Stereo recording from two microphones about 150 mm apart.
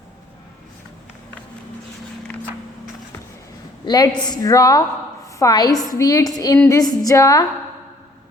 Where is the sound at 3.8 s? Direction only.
25° left (ahead or behind).